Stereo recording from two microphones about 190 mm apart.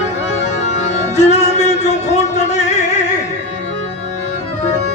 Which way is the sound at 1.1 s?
35° left (ahead or behind).